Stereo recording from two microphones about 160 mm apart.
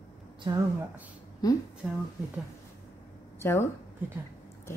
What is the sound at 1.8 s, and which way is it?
Speech, 5° right (ahead or behind).